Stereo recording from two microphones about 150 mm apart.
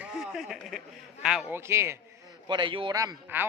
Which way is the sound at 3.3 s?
15° right (ahead or behind).